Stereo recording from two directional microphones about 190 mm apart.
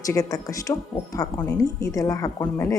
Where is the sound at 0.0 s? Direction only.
20° left (ahead or behind).